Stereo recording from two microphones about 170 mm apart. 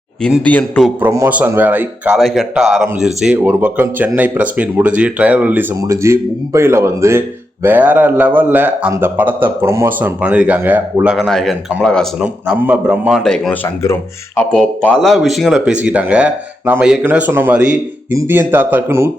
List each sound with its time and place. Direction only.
0.2 s speech: centre (ahead or behind)
0.4 s a man's voice: 10° left (ahead or behind)
0.9 s speech: 15° right (ahead or behind)
2.1 s speech: centre (ahead or behind)